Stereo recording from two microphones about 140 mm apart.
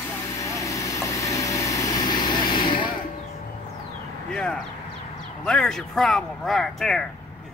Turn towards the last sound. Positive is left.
turn(degrees=5)  # may be behind; listen again after turning